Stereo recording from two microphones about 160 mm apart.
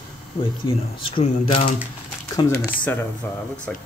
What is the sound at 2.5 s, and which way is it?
Speech, 10° left (ahead or behind).